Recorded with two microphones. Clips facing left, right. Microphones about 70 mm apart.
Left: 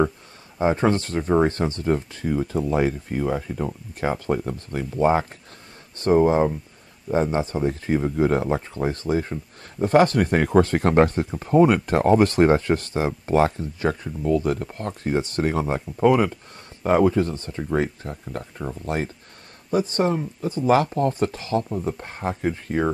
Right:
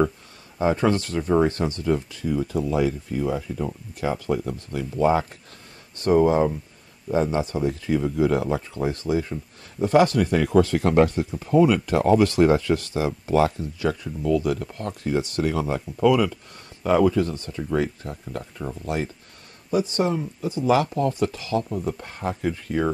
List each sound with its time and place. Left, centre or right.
0.6 s speech: left
18.4 s speech: centre
19.7 s speech: left